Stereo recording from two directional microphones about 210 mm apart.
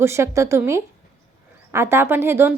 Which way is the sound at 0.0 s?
15° right (ahead or behind).